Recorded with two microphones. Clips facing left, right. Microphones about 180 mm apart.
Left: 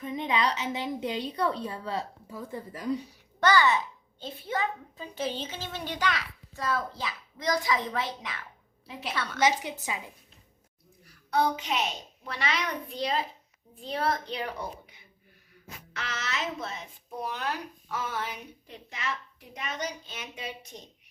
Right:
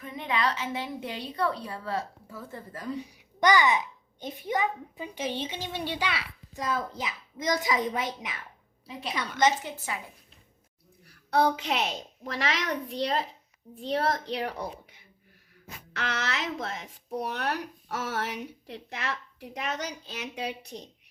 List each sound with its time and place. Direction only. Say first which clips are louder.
0.0 s a woman's voice: left 1 dB; 20° left (ahead or behind)
3.1 s a child's voice: right 3 dB; 15° right (ahead or behind)
8.9 s a woman's voice: right 1 dB; centre (ahead or behind)
9.4 s a woman's voice: right 1 dB; 15° left (ahead or behind)
11.3 s speech: right 2 dB; 70° right (ahead or behind)
12.3 s a child's voice: right 1 dB; 90° right
12.9 s a woman's voice: left 1 dB; 75° right (ahead or behind)
15.9 s speech: right 4 dB; 65° right (ahead or behind)